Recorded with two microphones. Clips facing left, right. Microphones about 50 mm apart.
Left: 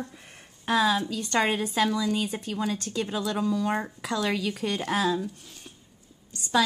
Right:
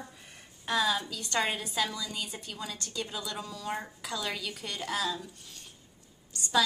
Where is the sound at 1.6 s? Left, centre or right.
Left.